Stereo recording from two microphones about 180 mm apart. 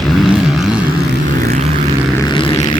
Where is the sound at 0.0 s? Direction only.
Centre (ahead or behind).